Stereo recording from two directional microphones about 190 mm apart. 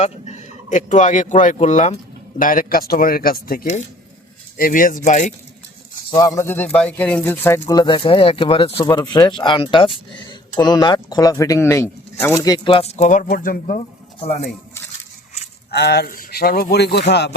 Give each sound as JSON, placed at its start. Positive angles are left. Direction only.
{"t": 0.0, "sound": "speech", "side_deg": 35}
{"t": 6.1, "sound": "speech", "side_deg": 20}
{"t": 13.2, "sound": "speech", "side_deg": 50}
{"t": 15.7, "sound": "speech", "side_deg": 60}